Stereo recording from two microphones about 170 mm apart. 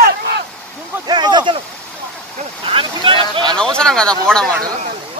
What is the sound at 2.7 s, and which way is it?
Speech, 30° right (ahead or behind).